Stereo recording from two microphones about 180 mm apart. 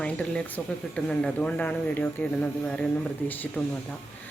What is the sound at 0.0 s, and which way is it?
Speech, 5° left (ahead or behind).